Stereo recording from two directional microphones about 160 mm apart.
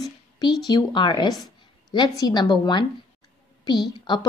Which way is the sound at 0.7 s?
25° left (ahead or behind).